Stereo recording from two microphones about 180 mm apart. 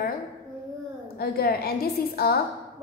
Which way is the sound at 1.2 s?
60° left (ahead or behind).